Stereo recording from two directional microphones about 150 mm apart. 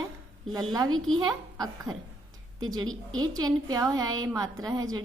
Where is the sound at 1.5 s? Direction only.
25° right (ahead or behind).